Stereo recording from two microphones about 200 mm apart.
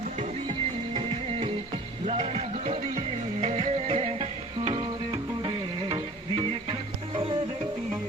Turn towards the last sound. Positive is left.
turn(degrees=-25)  # may be behind; listen again after turning